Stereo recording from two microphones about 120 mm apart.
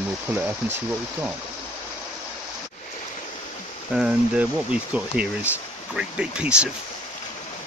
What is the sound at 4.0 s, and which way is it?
Speech, 5° right (ahead or behind).